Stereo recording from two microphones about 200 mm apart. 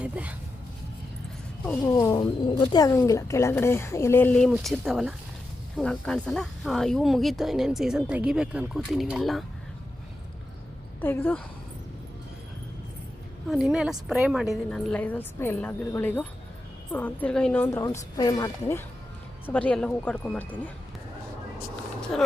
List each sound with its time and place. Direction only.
0.0 s speech: 5° right (ahead or behind)
1.9 s speech: 15° left (ahead or behind); by 9.4 s centre (ahead or behind)
11.0 s speech: 10° left (ahead or behind)
13.5 s speech: centre (ahead or behind)